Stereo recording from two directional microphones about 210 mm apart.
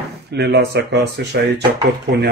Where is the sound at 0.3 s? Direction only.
50° right (ahead or behind).